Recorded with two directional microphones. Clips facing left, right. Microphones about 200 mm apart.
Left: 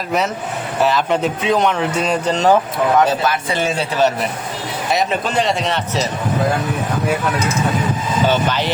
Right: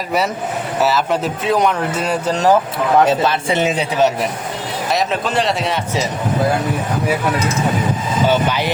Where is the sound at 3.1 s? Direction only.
25° right (ahead or behind).